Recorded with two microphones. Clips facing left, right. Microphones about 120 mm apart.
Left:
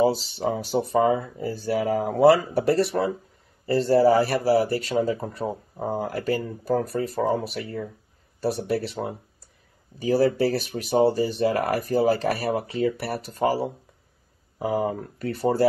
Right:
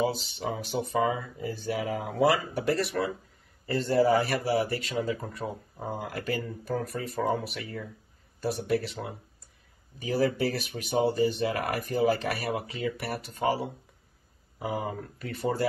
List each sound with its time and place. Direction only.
0.4 s speech: 35° left (ahead or behind)